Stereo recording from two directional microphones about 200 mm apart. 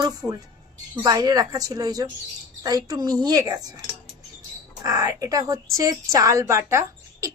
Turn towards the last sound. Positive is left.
turn(degrees=-15)  # may be behind; listen again after turning